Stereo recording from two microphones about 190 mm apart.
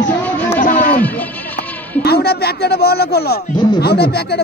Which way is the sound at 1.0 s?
10° left (ahead or behind).